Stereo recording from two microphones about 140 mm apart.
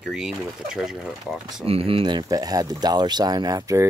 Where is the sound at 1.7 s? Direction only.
40° right (ahead or behind).